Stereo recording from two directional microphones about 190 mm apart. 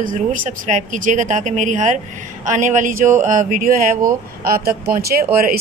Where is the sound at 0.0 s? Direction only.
45° right (ahead or behind).